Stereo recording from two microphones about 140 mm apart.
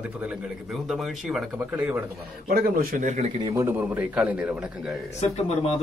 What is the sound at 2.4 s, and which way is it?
Speech, 90° right.